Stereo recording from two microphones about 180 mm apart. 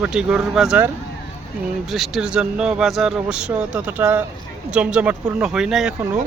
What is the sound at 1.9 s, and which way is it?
Speech, centre (ahead or behind).